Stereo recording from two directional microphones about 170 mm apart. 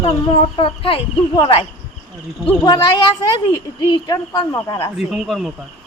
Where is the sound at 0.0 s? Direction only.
35° left (ahead or behind).